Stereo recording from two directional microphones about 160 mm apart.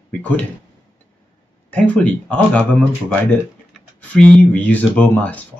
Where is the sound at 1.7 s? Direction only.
10° left (ahead or behind).